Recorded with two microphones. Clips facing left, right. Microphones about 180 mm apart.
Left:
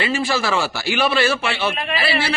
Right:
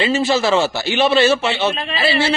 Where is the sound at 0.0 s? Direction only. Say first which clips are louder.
Right 5 dB; 25° right (ahead or behind).